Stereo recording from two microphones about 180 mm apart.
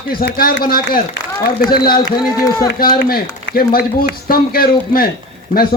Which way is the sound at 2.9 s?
55° left (ahead or behind).